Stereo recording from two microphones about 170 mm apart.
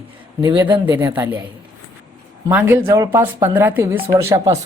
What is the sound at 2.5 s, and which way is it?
Speech, 10° right (ahead or behind).